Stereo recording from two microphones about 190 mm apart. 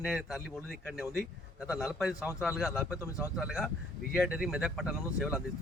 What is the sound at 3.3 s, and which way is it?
A man's voice, centre (ahead or behind).